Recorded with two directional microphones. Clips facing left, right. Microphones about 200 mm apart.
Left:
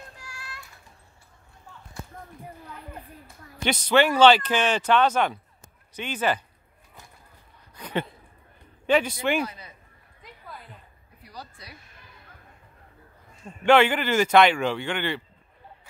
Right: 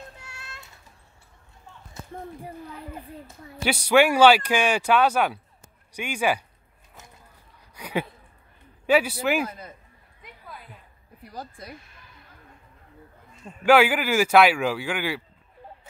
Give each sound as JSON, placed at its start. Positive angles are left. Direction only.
{"t": 0.2, "sound": "a sound", "side_deg": -25}
{"t": 3.6, "sound": "speech", "side_deg": -10}
{"t": 7.7, "sound": "a sound", "side_deg": -10}
{"t": 8.8, "sound": "speech", "side_deg": -10}
{"t": 9.5, "sound": "a man's voice", "side_deg": -50}
{"t": 11.2, "sound": "speech", "side_deg": -50}
{"t": 13.7, "sound": "speech", "side_deg": -10}